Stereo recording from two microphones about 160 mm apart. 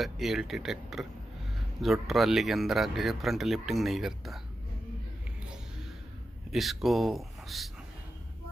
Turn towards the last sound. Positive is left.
turn(degrees=0)  # may be behind; listen again after turning